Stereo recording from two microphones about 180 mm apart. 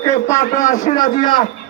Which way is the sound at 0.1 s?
40° left (ahead or behind).